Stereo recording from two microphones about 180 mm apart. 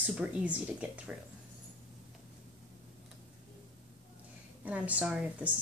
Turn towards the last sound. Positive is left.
turn(degrees=-5)  # may be behind; listen again after turning